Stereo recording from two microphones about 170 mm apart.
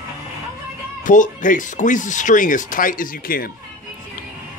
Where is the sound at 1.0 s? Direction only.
50° left (ahead or behind).